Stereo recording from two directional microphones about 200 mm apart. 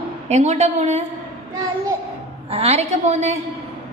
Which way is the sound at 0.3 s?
35° right (ahead or behind).